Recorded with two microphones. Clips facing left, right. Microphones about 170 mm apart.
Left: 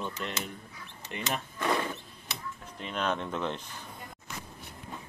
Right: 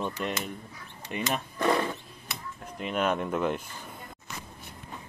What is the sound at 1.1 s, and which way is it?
Speech, 20° right (ahead or behind).